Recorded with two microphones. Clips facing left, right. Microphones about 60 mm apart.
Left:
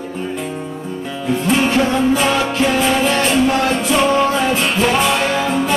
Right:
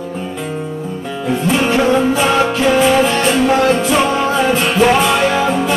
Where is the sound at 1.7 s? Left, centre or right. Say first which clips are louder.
Right 2 dB; centre.